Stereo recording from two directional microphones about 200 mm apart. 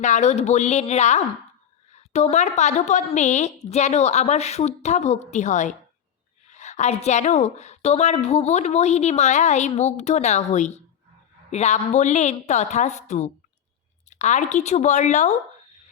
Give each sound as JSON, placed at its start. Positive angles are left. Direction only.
{"t": 0.0, "sound": "a woman's voice", "side_deg": 35}